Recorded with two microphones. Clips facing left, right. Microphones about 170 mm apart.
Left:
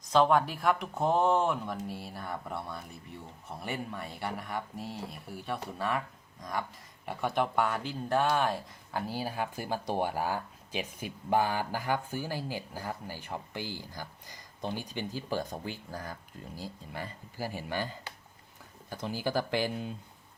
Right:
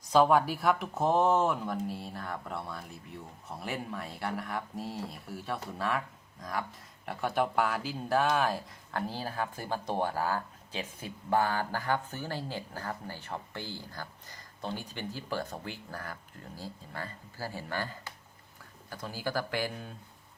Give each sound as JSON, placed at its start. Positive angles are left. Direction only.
{"t": 0.1, "sound": "speech", "side_deg": -5}